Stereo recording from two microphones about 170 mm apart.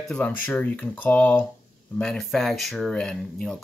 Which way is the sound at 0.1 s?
10° left (ahead or behind).